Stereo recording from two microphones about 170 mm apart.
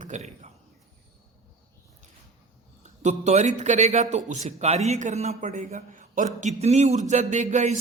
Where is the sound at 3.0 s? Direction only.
40° right (ahead or behind).